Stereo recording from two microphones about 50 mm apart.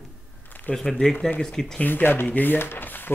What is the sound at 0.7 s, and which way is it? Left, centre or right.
Speech, left.